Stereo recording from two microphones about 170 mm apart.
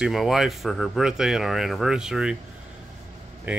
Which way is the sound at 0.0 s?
Centre (ahead or behind).